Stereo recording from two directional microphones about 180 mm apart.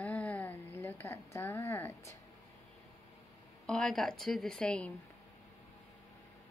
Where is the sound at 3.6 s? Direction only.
5° left (ahead or behind).